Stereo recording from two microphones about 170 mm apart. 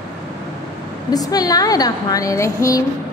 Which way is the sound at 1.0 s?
20° left (ahead or behind).